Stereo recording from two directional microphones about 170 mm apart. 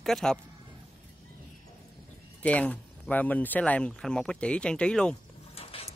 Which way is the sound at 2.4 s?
10° left (ahead or behind).